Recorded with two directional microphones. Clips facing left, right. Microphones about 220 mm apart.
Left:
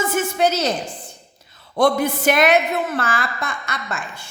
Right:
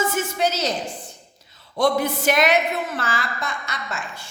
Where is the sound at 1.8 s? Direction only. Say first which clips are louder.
Left 3 dB; 55° left (ahead or behind).